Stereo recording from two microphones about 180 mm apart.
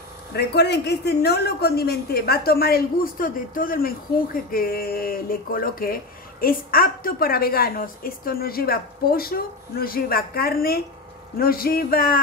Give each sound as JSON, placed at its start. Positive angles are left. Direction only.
{"t": 0.3, "sound": "a man's voice", "side_deg": 65}